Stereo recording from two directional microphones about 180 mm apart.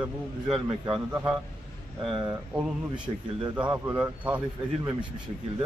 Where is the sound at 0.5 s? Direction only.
25° right (ahead or behind).